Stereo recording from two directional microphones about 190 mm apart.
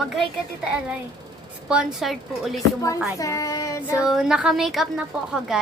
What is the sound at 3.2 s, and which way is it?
Child singing, 15° left (ahead or behind).